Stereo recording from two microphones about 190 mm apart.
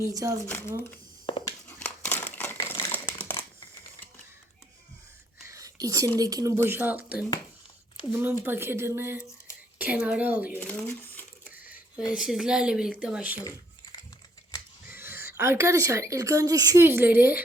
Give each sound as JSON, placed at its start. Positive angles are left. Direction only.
{"t": 0.0, "sound": "speech", "side_deg": -15}
{"t": 0.4, "sound": "speech", "side_deg": 10}
{"t": 1.3, "sound": "a sound", "side_deg": 30}
{"t": 1.6, "sound": "crumpling", "side_deg": 5}
{"t": 5.5, "sound": "a sound", "side_deg": -15}
{"t": 6.1, "sound": "speech", "side_deg": -20}
{"t": 10.6, "sound": "speech", "side_deg": 10}
{"t": 11.4, "sound": "speech", "side_deg": -5}
{"t": 14.8, "sound": "speech", "side_deg": -10}